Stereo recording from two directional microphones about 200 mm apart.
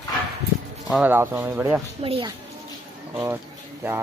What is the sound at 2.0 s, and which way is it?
Speech, 25° right (ahead or behind).